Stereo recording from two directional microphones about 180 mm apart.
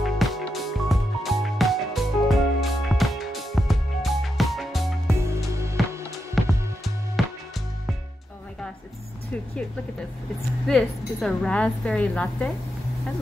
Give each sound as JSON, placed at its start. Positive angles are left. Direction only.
{"t": 0.0, "sound": "music", "side_deg": 0}
{"t": 5.5, "sound": "music", "side_deg": -15}
{"t": 6.4, "sound": "music", "side_deg": 0}
{"t": 10.7, "sound": "a woman's voice", "side_deg": 5}